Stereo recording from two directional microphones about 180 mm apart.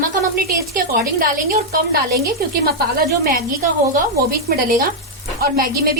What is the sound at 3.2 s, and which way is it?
Speech, 50° right (ahead or behind).